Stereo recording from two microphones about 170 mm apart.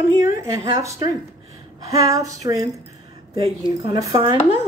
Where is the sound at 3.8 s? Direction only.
25° right (ahead or behind).